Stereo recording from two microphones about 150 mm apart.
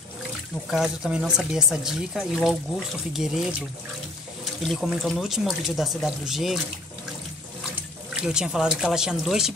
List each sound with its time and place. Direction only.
0.7 s speech: 5° right (ahead or behind)
5.0 s speech: centre (ahead or behind)
8.2 s speech: 5° right (ahead or behind)